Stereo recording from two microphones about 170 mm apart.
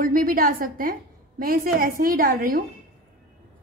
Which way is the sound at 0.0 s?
55° right (ahead or behind).